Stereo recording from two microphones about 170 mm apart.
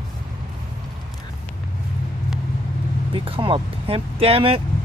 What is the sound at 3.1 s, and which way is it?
Speech, 30° right (ahead or behind).